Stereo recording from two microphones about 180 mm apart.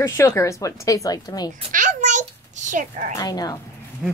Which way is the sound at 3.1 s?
20° left (ahead or behind).